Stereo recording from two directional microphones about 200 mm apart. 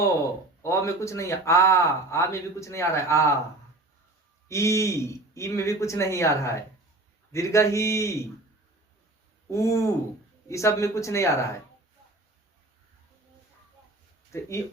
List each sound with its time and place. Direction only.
0.6 s speech: 15° left (ahead or behind)
4.4 s speech: 15° left (ahead or behind)
9.5 s speech: 15° left (ahead or behind)
14.3 s speech: 15° left (ahead or behind)